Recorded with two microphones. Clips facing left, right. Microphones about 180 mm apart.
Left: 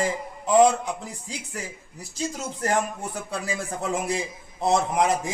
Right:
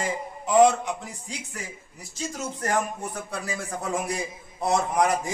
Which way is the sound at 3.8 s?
25° left (ahead or behind).